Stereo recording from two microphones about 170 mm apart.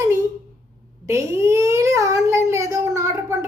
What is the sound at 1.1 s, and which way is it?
A child's voice, 15° right (ahead or behind).